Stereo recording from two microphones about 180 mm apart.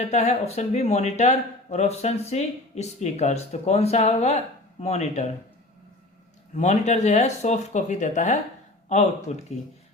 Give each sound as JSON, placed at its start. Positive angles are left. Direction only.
{"t": 0.0, "sound": "speech", "side_deg": 40}
{"t": 6.5, "sound": "speech", "side_deg": 40}